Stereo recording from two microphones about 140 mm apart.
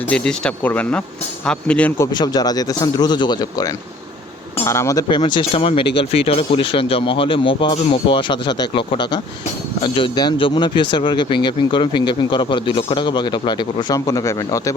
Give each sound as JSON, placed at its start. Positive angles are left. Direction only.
{"t": 0.1, "sound": "speech", "side_deg": 5}
{"t": 2.0, "sound": "speech", "side_deg": 30}
{"t": 4.6, "sound": "speech", "side_deg": 20}